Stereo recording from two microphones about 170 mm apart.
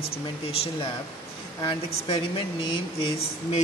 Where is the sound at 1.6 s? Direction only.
30° left (ahead or behind).